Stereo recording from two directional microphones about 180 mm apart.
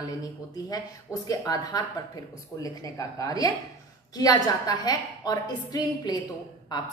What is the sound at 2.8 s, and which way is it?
A woman's voice, 20° left (ahead or behind).